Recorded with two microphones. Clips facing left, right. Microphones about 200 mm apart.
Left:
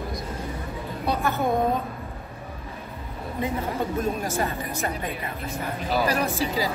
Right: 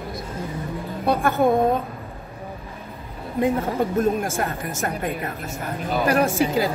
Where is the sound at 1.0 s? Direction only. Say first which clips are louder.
Right 5 dB; 50° right (ahead or behind).